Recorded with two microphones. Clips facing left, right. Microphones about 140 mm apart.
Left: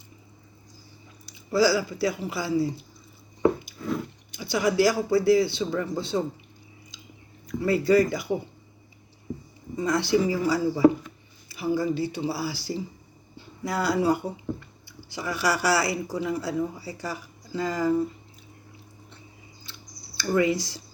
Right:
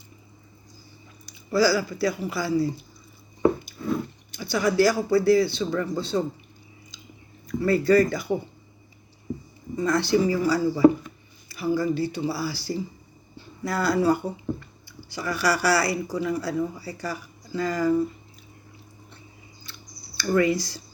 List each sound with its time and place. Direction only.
1.2 s speech: 20° left (ahead or behind)
3.8 s a sound: 25° right (ahead or behind)
4.4 s speech: 20° left (ahead or behind)
7.4 s speech: 15° left (ahead or behind)
9.7 s speech: 20° left (ahead or behind)
19.6 s scissors: 25° left (ahead or behind)